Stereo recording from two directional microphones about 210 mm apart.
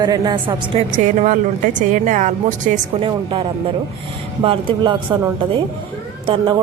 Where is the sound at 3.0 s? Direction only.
25° right (ahead or behind).